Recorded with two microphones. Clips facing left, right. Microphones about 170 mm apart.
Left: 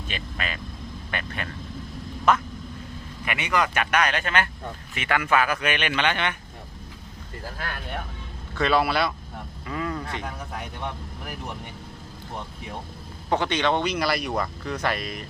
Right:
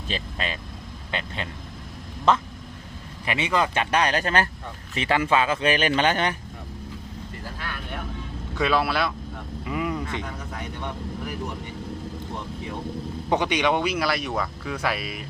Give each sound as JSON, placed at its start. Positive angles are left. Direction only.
{"t": 0.1, "sound": "speech", "side_deg": -30}
{"t": 8.5, "sound": "speech", "side_deg": -5}
{"t": 9.6, "sound": "vehicle", "side_deg": -15}
{"t": 13.3, "sound": "speech", "side_deg": -15}